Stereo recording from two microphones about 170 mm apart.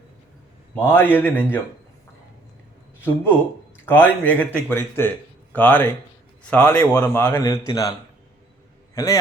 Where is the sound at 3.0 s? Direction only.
10° left (ahead or behind).